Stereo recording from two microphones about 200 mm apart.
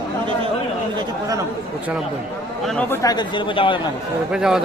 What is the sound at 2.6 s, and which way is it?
Speech, 5° left (ahead or behind).